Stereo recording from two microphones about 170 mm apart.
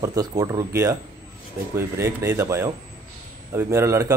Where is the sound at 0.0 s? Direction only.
20° right (ahead or behind).